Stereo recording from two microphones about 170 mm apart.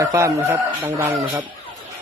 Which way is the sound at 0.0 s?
20° right (ahead or behind).